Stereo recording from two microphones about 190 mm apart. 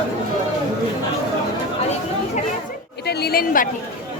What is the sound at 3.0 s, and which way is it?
Chatter, 55° left (ahead or behind).